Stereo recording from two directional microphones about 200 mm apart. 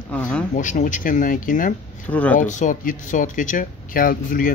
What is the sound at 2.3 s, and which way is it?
Speech, 40° left (ahead or behind).